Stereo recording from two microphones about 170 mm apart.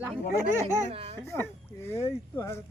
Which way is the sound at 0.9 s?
35° right (ahead or behind).